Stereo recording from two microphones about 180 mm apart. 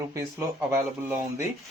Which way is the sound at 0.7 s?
15° right (ahead or behind).